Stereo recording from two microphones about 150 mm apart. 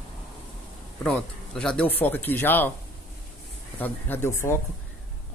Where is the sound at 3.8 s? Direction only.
15° left (ahead or behind).